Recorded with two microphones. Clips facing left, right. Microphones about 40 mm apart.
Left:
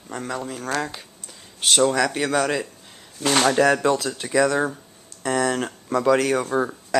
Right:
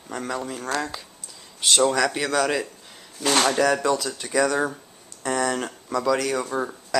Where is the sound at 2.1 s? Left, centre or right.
Centre.